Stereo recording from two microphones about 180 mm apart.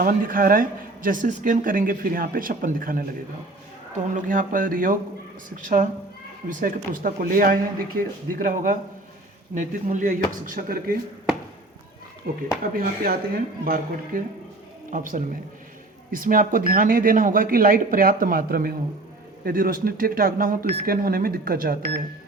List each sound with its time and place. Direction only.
0.0 s speech: 50° right (ahead or behind)
4.1 s speech: 50° right (ahead or behind)
12.3 s speech: 55° right (ahead or behind)